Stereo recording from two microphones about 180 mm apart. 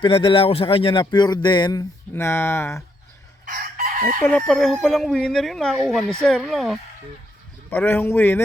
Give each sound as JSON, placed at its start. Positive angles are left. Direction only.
{"t": 0.0, "sound": "speech", "side_deg": 30}
{"t": 2.1, "sound": "speech", "side_deg": 15}
{"t": 3.4, "sound": "chicken", "side_deg": -50}
{"t": 4.2, "sound": "speech", "side_deg": 5}